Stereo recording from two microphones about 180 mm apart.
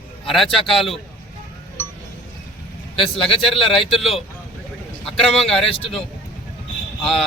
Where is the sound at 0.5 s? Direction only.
Centre (ahead or behind).